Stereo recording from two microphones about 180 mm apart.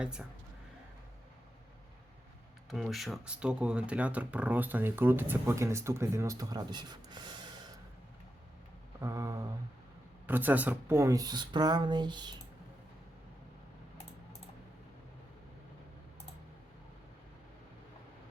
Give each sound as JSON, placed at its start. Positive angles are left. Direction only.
{"t": 0.0, "sound": "speech", "side_deg": -5}
{"t": 2.6, "sound": "speech", "side_deg": 0}
{"t": 9.0, "sound": "speech", "side_deg": -15}